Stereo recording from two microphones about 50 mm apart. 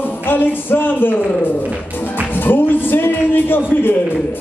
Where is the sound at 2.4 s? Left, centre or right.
Left.